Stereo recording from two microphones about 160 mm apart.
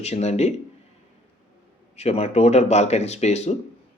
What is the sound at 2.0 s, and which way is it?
Speech, 40° left (ahead or behind).